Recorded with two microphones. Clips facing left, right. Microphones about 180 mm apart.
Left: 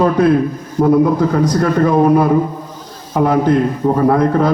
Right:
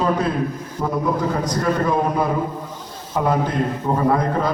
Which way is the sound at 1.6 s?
65° left (ahead or behind).